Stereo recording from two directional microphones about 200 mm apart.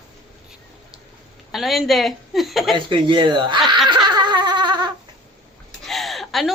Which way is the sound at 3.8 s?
20° right (ahead or behind).